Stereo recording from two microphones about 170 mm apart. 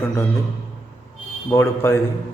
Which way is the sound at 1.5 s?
15° left (ahead or behind).